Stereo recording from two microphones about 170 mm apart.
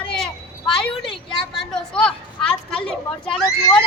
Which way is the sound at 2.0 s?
5° left (ahead or behind).